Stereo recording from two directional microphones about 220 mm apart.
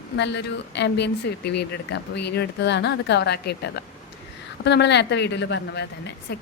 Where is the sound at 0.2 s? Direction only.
50° left (ahead or behind).